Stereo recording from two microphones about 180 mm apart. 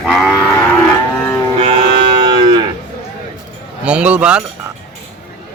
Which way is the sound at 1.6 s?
25° right (ahead or behind).